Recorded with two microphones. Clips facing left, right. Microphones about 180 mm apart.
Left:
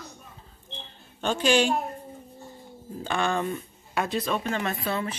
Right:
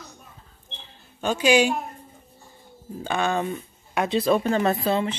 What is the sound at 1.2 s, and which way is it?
Speech, 10° right (ahead or behind).